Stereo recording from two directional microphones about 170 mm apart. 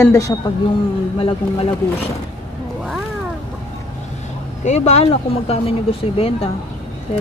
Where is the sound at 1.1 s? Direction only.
30° left (ahead or behind).